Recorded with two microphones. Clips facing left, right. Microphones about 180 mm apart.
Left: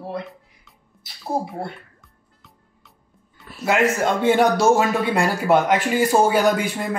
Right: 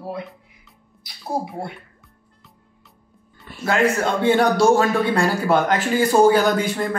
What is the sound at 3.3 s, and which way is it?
A man's voice, centre (ahead or behind).